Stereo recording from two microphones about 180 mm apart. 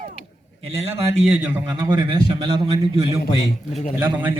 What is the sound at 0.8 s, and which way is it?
Speech, 35° right (ahead or behind).